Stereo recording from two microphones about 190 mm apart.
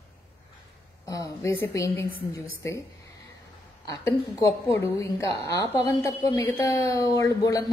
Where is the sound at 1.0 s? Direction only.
20° left (ahead or behind).